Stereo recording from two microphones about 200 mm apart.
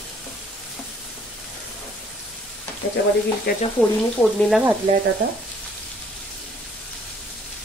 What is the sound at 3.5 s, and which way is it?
Speech, 50° left (ahead or behind).